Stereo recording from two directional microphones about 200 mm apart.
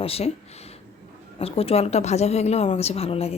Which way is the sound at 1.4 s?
30° left (ahead or behind).